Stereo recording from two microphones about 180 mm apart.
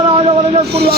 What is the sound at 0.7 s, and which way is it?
Speech, 65° right (ahead or behind).